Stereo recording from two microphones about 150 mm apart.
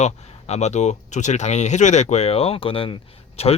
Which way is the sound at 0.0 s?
45° left (ahead or behind).